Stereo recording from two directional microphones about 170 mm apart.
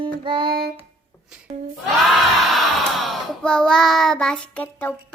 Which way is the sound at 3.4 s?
5° left (ahead or behind).